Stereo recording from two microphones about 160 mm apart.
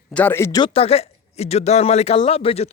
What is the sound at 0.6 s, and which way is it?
Speech, 35° left (ahead or behind).